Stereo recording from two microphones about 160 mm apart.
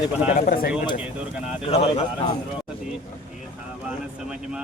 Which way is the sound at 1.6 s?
35° left (ahead or behind).